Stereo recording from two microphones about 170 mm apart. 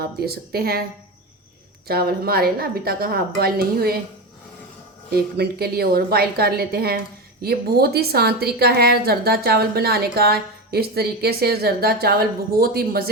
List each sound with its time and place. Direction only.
0.0 s a woman's voice: 65° right (ahead or behind)
1.9 s a woman's voice: 65° right (ahead or behind)
5.1 s a woman's voice: 65° right (ahead or behind)